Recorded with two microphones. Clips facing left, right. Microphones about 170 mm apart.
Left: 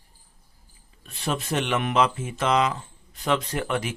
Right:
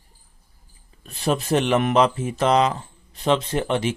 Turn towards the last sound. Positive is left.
turn(degrees=-25)  # may be behind; listen again after turning